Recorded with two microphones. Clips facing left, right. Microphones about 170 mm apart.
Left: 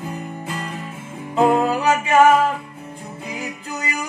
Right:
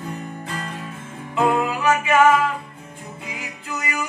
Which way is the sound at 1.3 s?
35° left (ahead or behind).